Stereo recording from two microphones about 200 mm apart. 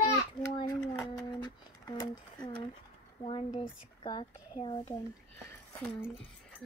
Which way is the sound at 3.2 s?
30° left (ahead or behind).